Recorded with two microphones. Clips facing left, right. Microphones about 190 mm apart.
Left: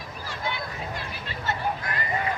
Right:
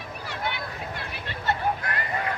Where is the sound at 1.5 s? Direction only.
65° right (ahead or behind).